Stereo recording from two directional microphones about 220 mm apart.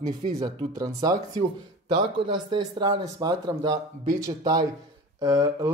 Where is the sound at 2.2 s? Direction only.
20° right (ahead or behind).